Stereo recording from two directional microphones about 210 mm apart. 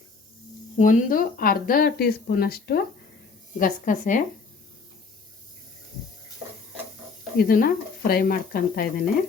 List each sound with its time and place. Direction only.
0.8 s a woman's voice: 40° left (ahead or behind)
7.3 s speech: 45° left (ahead or behind)